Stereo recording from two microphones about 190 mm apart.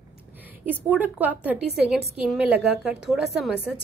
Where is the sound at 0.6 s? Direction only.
10° right (ahead or behind).